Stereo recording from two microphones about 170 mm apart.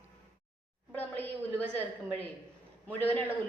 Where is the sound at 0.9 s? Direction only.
10° left (ahead or behind).